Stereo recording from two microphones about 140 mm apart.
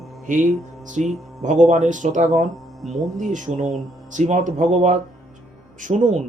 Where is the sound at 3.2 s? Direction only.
65° right (ahead or behind).